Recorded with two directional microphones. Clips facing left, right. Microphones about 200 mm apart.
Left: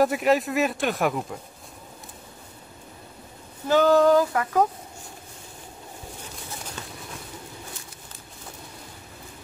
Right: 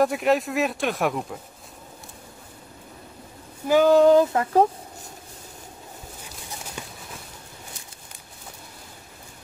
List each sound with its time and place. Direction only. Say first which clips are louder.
0.0 s speech: even; centre (ahead or behind)
3.6 s female singing: right 2 dB; 15° right (ahead or behind)
6.8 s a sound: right 1 dB; 15° right (ahead or behind)